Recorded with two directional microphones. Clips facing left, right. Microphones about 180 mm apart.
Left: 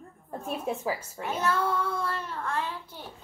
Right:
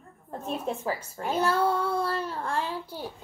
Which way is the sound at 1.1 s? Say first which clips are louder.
Right 5 dB; 30° right (ahead or behind).